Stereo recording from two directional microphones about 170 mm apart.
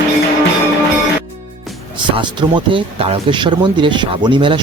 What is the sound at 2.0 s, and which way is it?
Speech, 30° right (ahead or behind).